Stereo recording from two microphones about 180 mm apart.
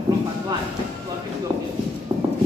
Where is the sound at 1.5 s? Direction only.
25° right (ahead or behind).